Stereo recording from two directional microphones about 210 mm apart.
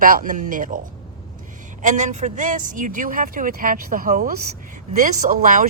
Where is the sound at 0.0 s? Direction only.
40° right (ahead or behind).